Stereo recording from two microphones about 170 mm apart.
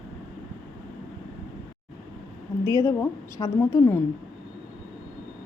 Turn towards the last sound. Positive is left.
turn(degrees=15)  # may be behind; listen again after turning